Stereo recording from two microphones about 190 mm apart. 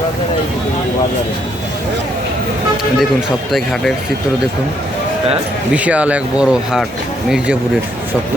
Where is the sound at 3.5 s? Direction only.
Centre (ahead or behind).